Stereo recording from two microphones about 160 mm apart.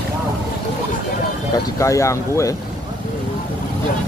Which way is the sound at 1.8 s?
20° left (ahead or behind).